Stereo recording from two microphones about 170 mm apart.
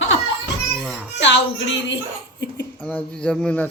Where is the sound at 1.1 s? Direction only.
90° left.